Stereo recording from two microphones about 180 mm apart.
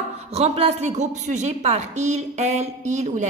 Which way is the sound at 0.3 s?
35° right (ahead or behind).